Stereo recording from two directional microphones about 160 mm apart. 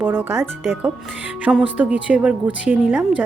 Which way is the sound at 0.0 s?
15° right (ahead or behind).